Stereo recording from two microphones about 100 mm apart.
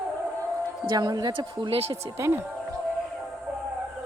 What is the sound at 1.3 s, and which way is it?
Speech, 65° right (ahead or behind).